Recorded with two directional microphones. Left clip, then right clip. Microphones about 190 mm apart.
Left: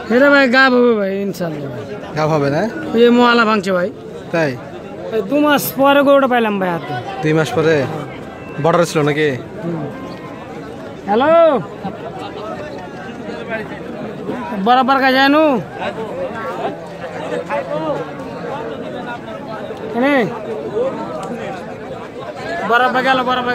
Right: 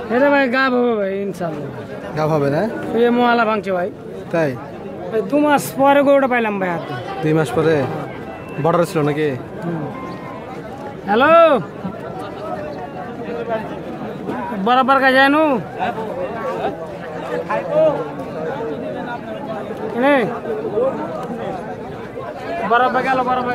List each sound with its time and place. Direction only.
0.1 s a man's voice: 50° left (ahead or behind)
2.1 s speech: centre (ahead or behind)
3.0 s a man's voice: 50° left (ahead or behind)
4.3 s speech: 5° right (ahead or behind)
5.1 s a man's voice: 40° left (ahead or behind)
7.2 s speech: 5° right (ahead or behind)
11.1 s speech: 15° left (ahead or behind)
14.6 s a man's voice: 35° left (ahead or behind)
20.0 s a man's voice: 45° left (ahead or behind)
22.7 s a man's voice: 50° left (ahead or behind)